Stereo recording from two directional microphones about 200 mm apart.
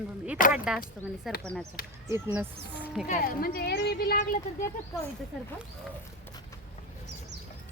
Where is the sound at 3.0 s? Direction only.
45° left (ahead or behind).